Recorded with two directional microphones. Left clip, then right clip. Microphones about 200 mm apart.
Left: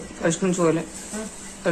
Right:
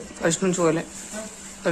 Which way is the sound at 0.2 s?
15° right (ahead or behind).